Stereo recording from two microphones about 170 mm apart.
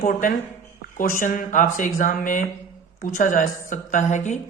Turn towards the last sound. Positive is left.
turn(degrees=45)  # may be behind; listen again after turning